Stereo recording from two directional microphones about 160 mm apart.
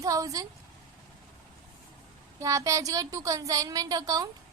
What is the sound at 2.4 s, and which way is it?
A woman's voice, 20° right (ahead or behind).